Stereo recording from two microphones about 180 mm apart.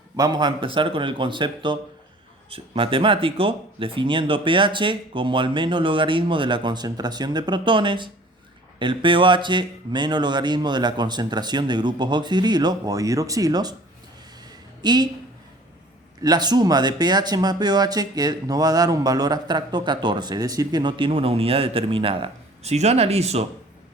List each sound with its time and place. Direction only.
0.2 s speech: 25° right (ahead or behind)
14.4 s a sound: 25° right (ahead or behind)
16.2 s speech: 20° right (ahead or behind)